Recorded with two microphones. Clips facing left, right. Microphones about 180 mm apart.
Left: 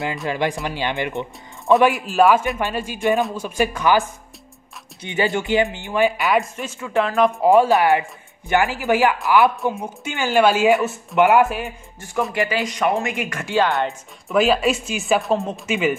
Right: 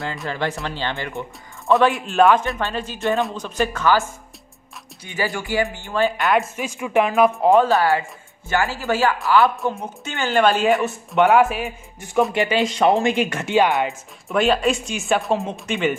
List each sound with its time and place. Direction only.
0.0 s speech: 20° left (ahead or behind)
1.9 s speech: centre (ahead or behind)
3.2 s a woman's voice: centre (ahead or behind)
5.0 s speech: 20° left (ahead or behind)
6.1 s a woman's voice: centre (ahead or behind)
7.4 s a woman's voice: 10° left (ahead or behind)
12.4 s speech: 25° right (ahead or behind)
13.7 s a woman's voice: centre (ahead or behind)